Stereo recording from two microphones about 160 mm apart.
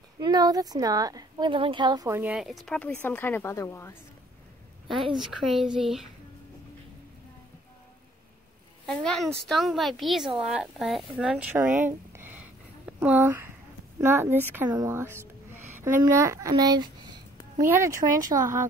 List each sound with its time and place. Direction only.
0.2 s speech: 25° right (ahead or behind)
2.6 s speech: 5° left (ahead or behind)
4.8 s speech: centre (ahead or behind)
8.9 s speech: centre (ahead or behind)
12.1 s a sound: 15° right (ahead or behind)
14.0 s speech: 15° right (ahead or behind)
14.8 s music: 15° right (ahead or behind)
16.0 s speech: 20° right (ahead or behind)